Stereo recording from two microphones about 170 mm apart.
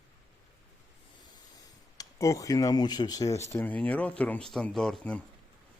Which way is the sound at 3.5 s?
10° left (ahead or behind).